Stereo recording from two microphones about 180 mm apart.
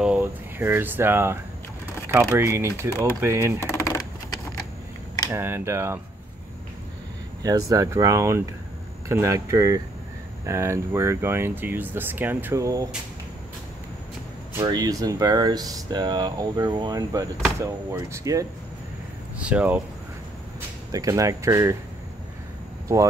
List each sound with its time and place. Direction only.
0.0 s speech: 10° right (ahead or behind)
3.5 s a sound: 15° left (ahead or behind)
5.3 s speech: 10° right (ahead or behind)
7.4 s speech: 20° right (ahead or behind)
14.6 s speech: 20° right (ahead or behind)
19.4 s speech: 5° right (ahead or behind)
20.9 s speech: 20° right (ahead or behind)